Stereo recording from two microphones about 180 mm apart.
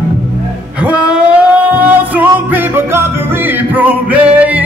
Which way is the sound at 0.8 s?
5° right (ahead or behind).